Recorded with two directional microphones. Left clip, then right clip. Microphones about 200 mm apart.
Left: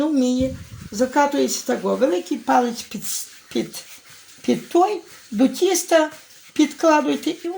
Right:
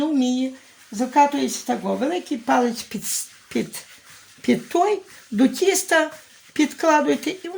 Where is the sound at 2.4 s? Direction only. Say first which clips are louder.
Left 1 dB; 25° right (ahead or behind).